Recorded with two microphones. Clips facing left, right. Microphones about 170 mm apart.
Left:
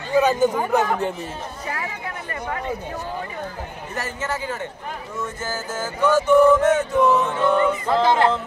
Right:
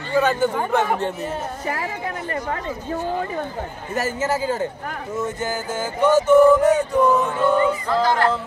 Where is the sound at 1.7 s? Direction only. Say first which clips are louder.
Right 3 dB; 30° right (ahead or behind).